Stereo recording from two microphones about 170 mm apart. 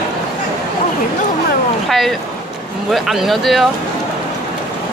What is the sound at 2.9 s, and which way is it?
Speech, centre (ahead or behind).